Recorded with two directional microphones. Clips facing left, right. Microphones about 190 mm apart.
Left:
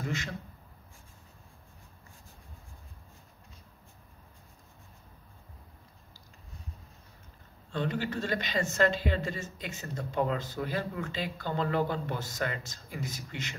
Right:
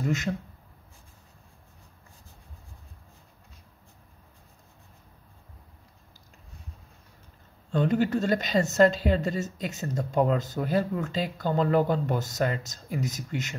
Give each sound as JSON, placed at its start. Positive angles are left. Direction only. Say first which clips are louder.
{"t": 7.7, "sound": "a woman's voice", "louder": "right 8 dB", "side_deg": -45}